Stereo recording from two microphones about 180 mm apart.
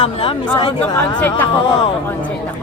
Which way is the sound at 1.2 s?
10° left (ahead or behind).